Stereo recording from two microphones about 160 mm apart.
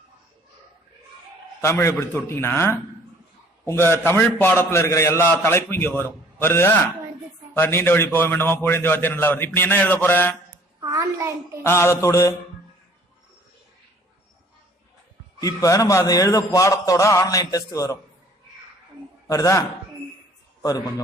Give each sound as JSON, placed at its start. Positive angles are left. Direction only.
{"t": 1.6, "sound": "a man's voice", "side_deg": 15}
{"t": 10.8, "sound": "a sound", "side_deg": -20}
{"t": 11.6, "sound": "a man's voice", "side_deg": 15}
{"t": 15.4, "sound": "a man's voice", "side_deg": 20}
{"t": 19.3, "sound": "a man's voice", "side_deg": 20}